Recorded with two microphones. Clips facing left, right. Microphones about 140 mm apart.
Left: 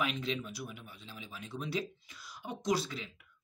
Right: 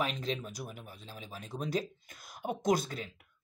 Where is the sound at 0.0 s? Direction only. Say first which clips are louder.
Right 1 dB; 40° right (ahead or behind).